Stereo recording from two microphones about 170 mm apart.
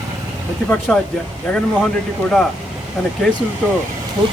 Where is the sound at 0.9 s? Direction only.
5° left (ahead or behind).